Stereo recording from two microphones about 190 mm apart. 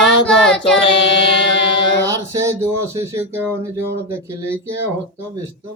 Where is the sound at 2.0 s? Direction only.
15° right (ahead or behind).